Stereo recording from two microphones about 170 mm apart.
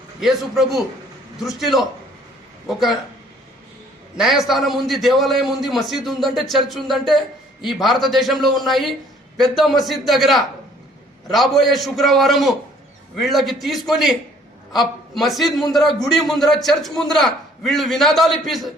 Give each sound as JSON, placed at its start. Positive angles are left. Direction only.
{"t": 0.2, "sound": "a man's voice", "side_deg": 0}
{"t": 4.2, "sound": "a man's voice", "side_deg": 0}